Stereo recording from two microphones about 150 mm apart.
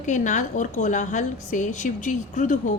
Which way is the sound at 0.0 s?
55° left (ahead or behind).